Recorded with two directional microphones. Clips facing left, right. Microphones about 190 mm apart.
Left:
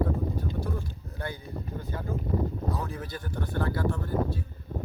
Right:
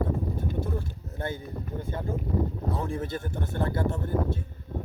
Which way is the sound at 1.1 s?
25° right (ahead or behind).